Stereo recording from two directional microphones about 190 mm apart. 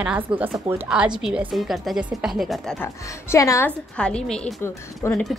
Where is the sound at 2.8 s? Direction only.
15° left (ahead or behind).